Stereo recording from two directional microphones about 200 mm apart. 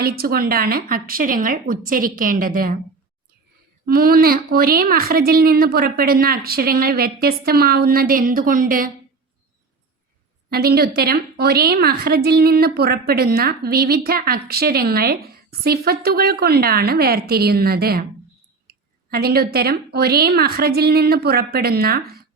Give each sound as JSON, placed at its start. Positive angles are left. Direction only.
{"t": 0.0, "sound": "a woman's voice", "side_deg": -50}
{"t": 3.8, "sound": "a woman's voice", "side_deg": -50}
{"t": 10.5, "sound": "a woman's voice", "side_deg": -50}